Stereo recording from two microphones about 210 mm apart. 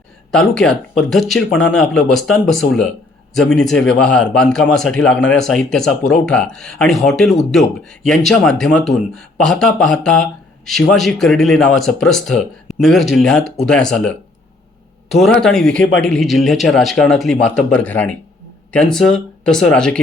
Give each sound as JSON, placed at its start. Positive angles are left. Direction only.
{"t": 0.3, "sound": "a man's voice", "side_deg": 0}